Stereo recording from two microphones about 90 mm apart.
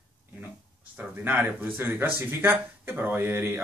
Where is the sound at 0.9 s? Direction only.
15° right (ahead or behind).